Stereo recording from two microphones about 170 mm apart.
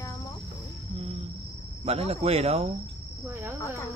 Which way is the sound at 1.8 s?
35° right (ahead or behind).